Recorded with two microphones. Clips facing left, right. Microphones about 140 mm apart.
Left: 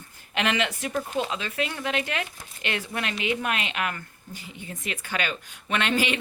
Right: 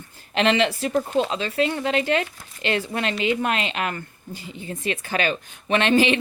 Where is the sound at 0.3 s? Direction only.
30° right (ahead or behind).